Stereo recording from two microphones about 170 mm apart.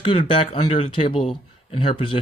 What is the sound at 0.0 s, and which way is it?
Speech, 30° left (ahead or behind).